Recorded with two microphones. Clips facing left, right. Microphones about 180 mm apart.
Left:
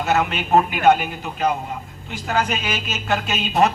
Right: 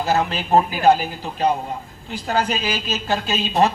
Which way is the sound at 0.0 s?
35° right (ahead or behind).